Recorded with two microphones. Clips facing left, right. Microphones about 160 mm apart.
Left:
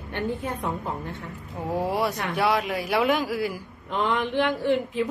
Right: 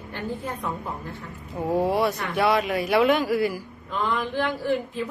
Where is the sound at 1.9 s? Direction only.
10° left (ahead or behind).